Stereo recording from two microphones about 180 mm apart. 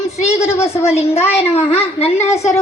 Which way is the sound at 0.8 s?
35° left (ahead or behind).